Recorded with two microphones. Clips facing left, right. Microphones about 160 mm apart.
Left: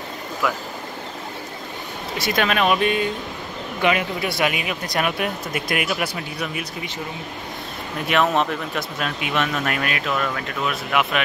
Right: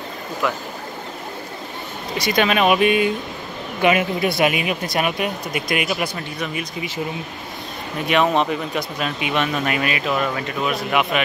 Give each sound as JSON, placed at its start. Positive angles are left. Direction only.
{"t": 2.1, "sound": "speech", "side_deg": 0}
{"t": 4.4, "sound": "speech", "side_deg": -20}
{"t": 4.8, "sound": "speech", "side_deg": -5}
{"t": 8.1, "sound": "speech", "side_deg": 0}